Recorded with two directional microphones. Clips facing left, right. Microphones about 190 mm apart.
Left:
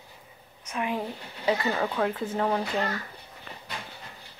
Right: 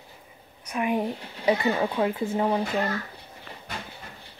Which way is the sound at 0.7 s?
15° right (ahead or behind).